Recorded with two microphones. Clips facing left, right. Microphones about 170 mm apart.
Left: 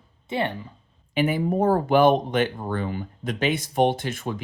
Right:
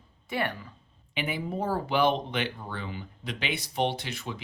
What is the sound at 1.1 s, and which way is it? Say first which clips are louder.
Speech: left 9 dB; 45° left (ahead or behind).